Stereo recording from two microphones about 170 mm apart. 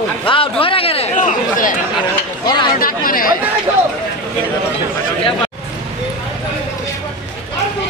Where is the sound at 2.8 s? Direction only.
55° left (ahead or behind).